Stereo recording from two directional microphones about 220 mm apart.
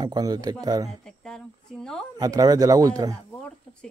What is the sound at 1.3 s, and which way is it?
Speech, 5° left (ahead or behind).